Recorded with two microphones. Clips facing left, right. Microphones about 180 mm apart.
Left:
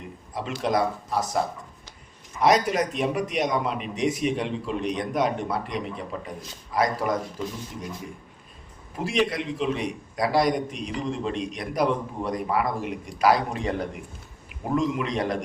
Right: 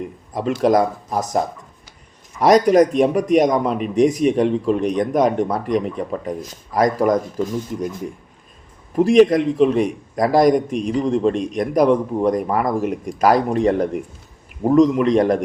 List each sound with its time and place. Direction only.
0.3 s a man's voice: 45° right (ahead or behind)
2.4 s a man's voice: 40° right (ahead or behind)
9.0 s a man's voice: 45° right (ahead or behind)